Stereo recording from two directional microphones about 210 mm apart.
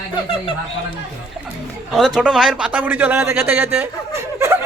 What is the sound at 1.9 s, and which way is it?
A man's voice, centre (ahead or behind).